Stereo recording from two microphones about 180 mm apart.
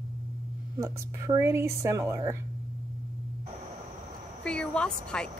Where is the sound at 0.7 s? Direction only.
15° right (ahead or behind).